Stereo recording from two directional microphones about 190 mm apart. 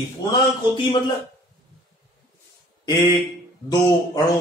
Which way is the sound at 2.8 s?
15° left (ahead or behind).